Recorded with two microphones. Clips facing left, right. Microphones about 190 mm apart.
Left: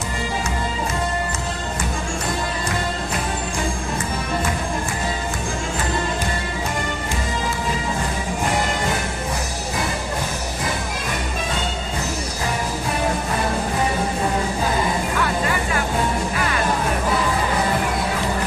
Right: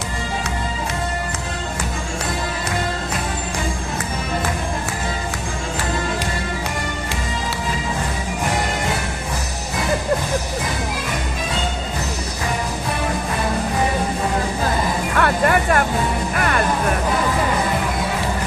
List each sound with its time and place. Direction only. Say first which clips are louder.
15.1 s music: right 5 dB; 60° right (ahead or behind)